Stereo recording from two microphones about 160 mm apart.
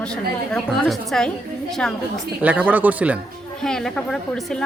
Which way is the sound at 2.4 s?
10° right (ahead or behind).